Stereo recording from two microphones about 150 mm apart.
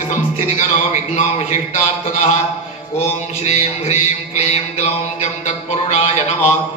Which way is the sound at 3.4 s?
45° left (ahead or behind).